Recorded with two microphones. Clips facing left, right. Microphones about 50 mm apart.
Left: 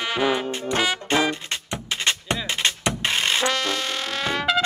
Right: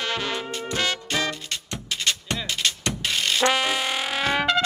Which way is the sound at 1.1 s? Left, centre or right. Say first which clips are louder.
Left 5 dB; left.